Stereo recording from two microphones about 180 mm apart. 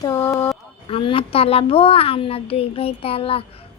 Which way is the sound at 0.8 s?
30° left (ahead or behind).